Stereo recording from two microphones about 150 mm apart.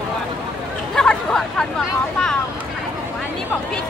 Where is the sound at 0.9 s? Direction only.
5° left (ahead or behind).